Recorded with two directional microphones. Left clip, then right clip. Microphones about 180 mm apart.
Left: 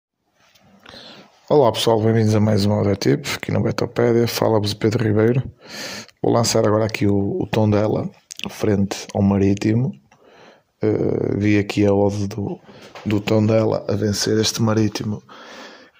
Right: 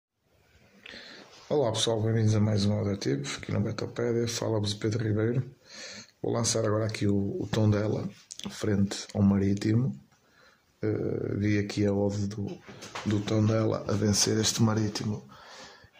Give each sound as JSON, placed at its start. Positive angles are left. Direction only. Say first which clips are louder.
{"t": 0.9, "sound": "speech", "louder": "left 7 dB", "side_deg": 35}
{"t": 10.8, "sound": "speech", "louder": "left 11 dB", "side_deg": 40}
{"t": 13.5, "sound": "speech", "louder": "left 10 dB", "side_deg": 35}